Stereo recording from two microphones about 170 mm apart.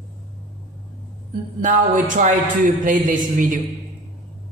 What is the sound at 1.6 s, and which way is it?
Speech, 50° right (ahead or behind).